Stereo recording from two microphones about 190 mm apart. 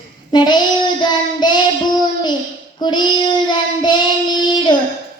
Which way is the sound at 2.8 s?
25° left (ahead or behind).